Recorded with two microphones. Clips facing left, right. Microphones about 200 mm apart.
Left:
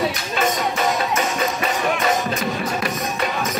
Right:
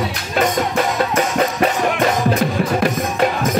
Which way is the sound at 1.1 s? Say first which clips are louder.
Right 4 dB; 55° right (ahead or behind).